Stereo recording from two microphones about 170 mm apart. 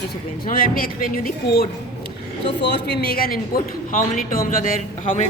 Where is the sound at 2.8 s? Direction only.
70° left (ahead or behind).